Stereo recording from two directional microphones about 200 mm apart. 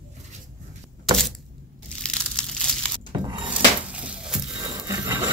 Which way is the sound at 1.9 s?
5° left (ahead or behind).